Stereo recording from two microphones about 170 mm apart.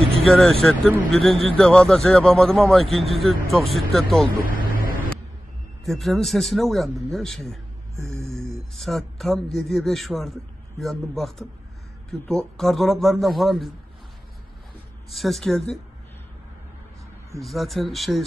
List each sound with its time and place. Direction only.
0.3 s a man's voice: centre (ahead or behind)
4.5 s vehicle: 55° left (ahead or behind)
5.9 s a man's voice: centre (ahead or behind)
8.7 s a man's voice: centre (ahead or behind)
15.0 s a man's voice: centre (ahead or behind)
17.4 s a man's voice: centre (ahead or behind)